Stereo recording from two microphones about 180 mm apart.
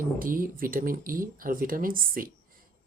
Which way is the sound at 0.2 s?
50° right (ahead or behind).